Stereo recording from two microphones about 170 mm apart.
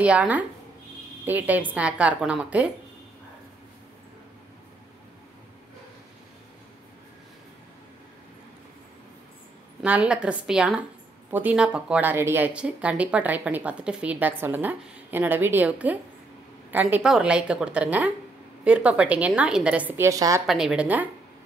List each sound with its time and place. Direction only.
0.0 s a woman's voice: 5° right (ahead or behind)
9.8 s a woman's voice: 5° right (ahead or behind)
20.4 s a woman's voice: centre (ahead or behind)